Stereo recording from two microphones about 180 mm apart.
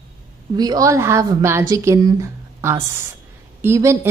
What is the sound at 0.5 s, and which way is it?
A woman's voice, 20° right (ahead or behind).